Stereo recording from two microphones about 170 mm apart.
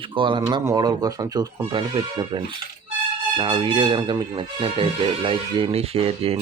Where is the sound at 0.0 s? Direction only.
30° right (ahead or behind).